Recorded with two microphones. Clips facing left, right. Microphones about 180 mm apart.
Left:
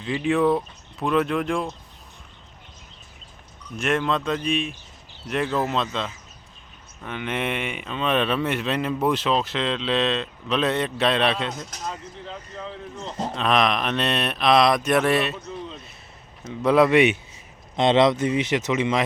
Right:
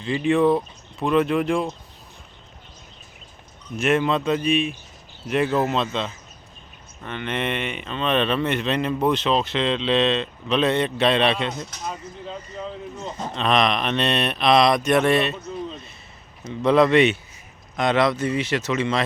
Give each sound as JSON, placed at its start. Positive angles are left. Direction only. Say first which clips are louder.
{"t": 0.0, "sound": "speech", "louder": "right 2 dB", "side_deg": 0}
{"t": 3.8, "sound": "speech", "louder": "right 3 dB", "side_deg": -5}
{"t": 11.9, "sound": "speech", "louder": "right 1 dB", "side_deg": -15}
{"t": 13.3, "sound": "speech", "louder": "right 1 dB", "side_deg": 5}
{"t": 16.5, "sound": "speech", "louder": "right 1 dB", "side_deg": 5}
{"t": 17.7, "sound": "speech", "louder": "left 2 dB", "side_deg": 25}